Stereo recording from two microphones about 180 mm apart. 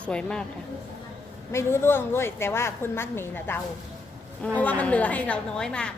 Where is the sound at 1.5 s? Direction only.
15° left (ahead or behind).